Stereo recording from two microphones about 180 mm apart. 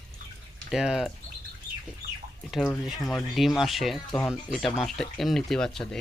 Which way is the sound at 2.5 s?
Centre (ahead or behind).